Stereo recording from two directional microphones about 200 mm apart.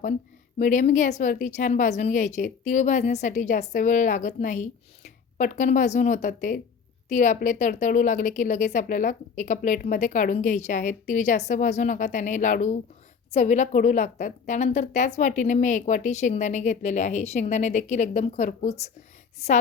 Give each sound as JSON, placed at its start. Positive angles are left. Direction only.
{"t": 0.6, "sound": "a woman's voice", "side_deg": 40}